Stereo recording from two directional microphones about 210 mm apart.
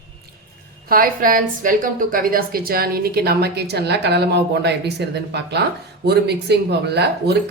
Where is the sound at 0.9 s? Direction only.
40° right (ahead or behind).